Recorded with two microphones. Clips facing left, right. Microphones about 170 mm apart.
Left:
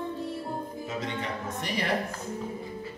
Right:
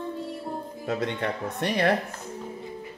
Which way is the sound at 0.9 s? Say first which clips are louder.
Right 7 dB; 60° right (ahead or behind).